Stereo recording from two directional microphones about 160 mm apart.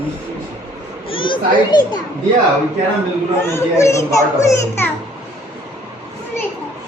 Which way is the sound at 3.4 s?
15° left (ahead or behind).